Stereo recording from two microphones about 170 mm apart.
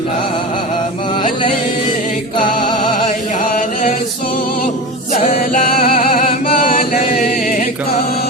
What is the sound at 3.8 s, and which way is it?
Music, 55° left (ahead or behind).